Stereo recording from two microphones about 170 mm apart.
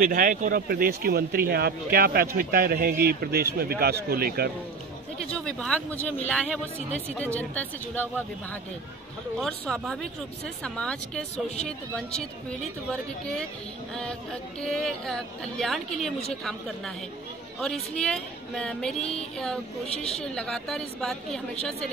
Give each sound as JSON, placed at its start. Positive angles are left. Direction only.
{"t": 0.0, "sound": "speech", "side_deg": -55}
{"t": 5.3, "sound": "speech", "side_deg": 5}
{"t": 9.4, "sound": "a woman's voice", "side_deg": 5}
{"t": 11.3, "sound": "speech", "side_deg": 40}
{"t": 11.6, "sound": "a woman's voice", "side_deg": 5}
{"t": 14.6, "sound": "a woman's voice", "side_deg": 5}